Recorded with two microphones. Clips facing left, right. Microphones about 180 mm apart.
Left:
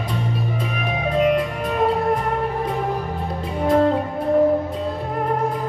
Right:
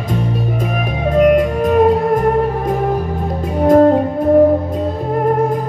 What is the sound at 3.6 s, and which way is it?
Music, 45° right (ahead or behind).